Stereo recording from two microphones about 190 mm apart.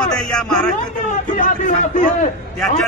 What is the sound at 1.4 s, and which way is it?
Speech, 40° left (ahead or behind).